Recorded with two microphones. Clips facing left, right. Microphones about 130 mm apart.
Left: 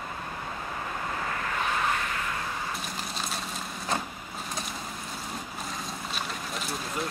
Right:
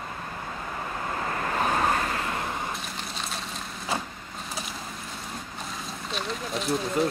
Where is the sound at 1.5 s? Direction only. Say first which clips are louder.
Right 5 dB; 40° right (ahead or behind).